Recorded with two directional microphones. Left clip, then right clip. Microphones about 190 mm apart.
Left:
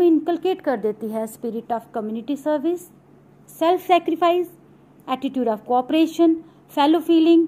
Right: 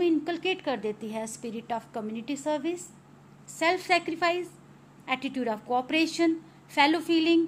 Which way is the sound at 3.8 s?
35° left (ahead or behind).